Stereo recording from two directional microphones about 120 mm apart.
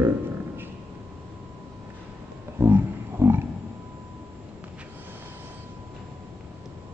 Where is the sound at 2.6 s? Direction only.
20° right (ahead or behind).